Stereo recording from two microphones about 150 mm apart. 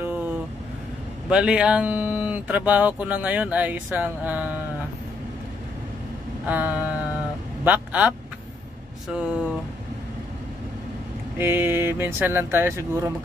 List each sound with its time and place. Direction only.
0.0 s vehicle: 10° right (ahead or behind)
1.3 s speech: 5° right (ahead or behind)
6.4 s speech: 10° right (ahead or behind)
7.6 s vehicle: 10° right (ahead or behind)
9.1 s speech: 5° right (ahead or behind)
11.3 s speech: 15° right (ahead or behind)